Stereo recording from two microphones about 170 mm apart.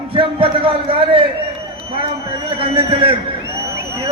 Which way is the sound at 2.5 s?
30° right (ahead or behind).